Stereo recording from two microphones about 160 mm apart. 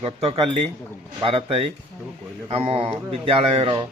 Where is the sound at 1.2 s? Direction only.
35° right (ahead or behind).